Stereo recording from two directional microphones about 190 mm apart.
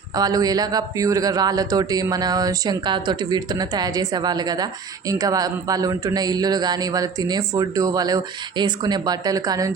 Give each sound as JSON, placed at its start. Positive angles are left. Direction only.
{"t": 0.1, "sound": "a man's voice", "side_deg": -20}